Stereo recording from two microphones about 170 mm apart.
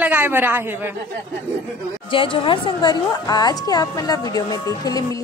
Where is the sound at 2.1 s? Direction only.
30° left (ahead or behind).